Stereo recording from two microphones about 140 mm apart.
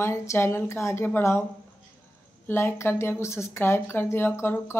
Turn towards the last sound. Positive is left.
turn(degrees=20)  # may be behind; listen again after turning